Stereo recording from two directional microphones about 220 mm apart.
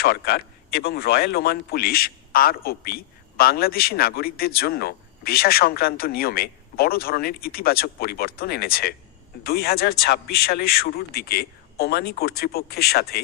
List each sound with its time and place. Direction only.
0.0 s speech: 45° left (ahead or behind)